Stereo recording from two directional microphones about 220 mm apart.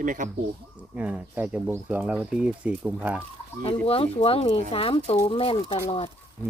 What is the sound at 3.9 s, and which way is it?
Speech, 25° left (ahead or behind).